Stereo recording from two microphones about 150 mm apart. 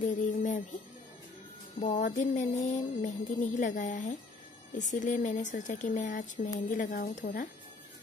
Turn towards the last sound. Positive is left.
turn(degrees=75)  # may be behind; listen again after turning